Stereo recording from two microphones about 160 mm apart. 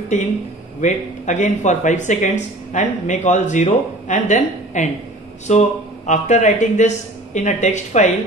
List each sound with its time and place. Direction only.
0.1 s speech: 45° left (ahead or behind)